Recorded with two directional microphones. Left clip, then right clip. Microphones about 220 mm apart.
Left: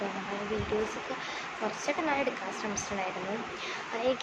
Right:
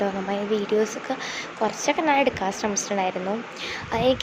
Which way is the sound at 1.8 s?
35° right (ahead or behind).